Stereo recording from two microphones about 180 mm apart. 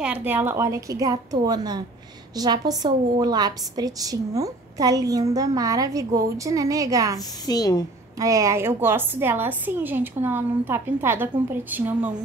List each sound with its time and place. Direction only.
0.0 s a woman's voice: 10° right (ahead or behind)
7.4 s a woman's voice: 20° left (ahead or behind)
8.2 s a woman's voice: 15° right (ahead or behind)